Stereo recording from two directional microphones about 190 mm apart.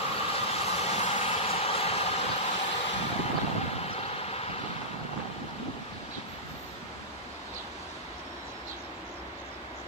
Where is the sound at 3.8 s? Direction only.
30° left (ahead or behind).